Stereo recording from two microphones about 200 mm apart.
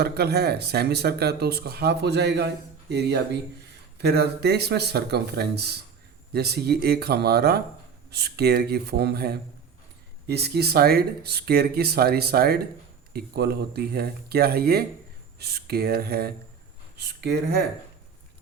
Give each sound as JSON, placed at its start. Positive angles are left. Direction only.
{"t": 0.0, "sound": "speech", "side_deg": -55}